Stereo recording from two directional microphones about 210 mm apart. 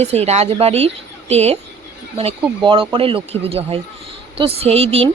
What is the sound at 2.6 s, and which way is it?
Speech, 25° right (ahead or behind).